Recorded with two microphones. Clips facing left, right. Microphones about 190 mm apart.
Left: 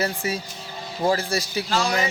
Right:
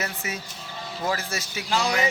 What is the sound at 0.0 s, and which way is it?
Speech, 35° left (ahead or behind).